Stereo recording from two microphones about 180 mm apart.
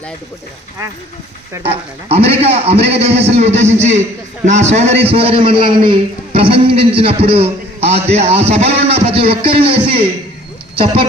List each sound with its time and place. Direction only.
1.6 s a man's voice: 35° right (ahead or behind)